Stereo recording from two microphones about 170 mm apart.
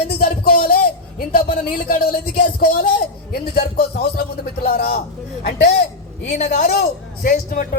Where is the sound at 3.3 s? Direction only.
60° left (ahead or behind).